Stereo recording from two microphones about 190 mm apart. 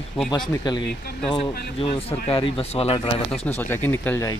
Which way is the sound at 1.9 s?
30° left (ahead or behind).